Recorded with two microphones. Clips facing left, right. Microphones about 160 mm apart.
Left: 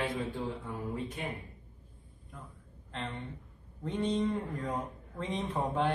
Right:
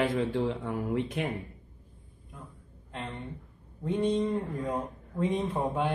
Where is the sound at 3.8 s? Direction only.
10° right (ahead or behind).